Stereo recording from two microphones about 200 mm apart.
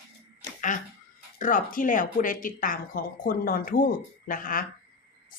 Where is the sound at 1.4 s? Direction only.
40° left (ahead or behind).